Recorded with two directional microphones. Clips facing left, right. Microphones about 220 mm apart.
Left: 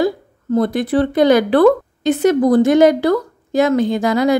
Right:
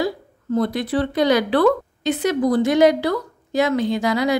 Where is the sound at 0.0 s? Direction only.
50° left (ahead or behind).